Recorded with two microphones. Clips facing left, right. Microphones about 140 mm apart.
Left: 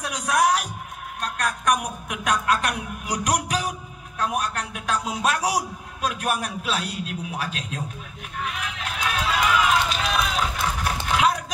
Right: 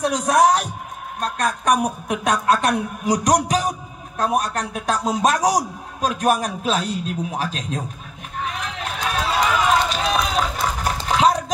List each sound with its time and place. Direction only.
0.0 s a man's voice: 35° right (ahead or behind)
8.4 s run: 35° right (ahead or behind)